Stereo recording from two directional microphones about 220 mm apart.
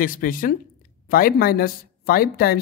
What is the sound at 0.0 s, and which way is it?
Speech, 40° left (ahead or behind).